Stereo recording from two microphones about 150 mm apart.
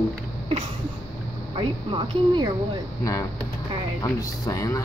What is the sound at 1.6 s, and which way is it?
Speech, 35° right (ahead or behind).